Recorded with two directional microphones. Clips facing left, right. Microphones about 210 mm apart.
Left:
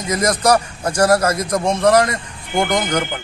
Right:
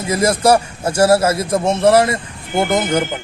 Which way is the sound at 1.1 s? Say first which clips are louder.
Right 2 dB; 25° right (ahead or behind).